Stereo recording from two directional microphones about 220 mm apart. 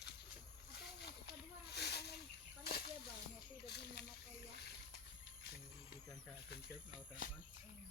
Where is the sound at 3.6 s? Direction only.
50° left (ahead or behind).